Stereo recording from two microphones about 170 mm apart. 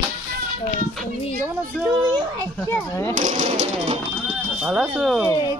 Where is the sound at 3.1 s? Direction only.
45° right (ahead or behind).